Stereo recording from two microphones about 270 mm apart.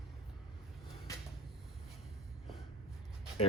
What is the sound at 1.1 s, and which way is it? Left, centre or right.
Cupboard open or close, centre.